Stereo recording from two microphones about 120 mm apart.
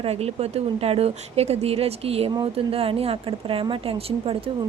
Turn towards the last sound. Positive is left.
turn(degrees=-50)  # may be behind; listen again after turning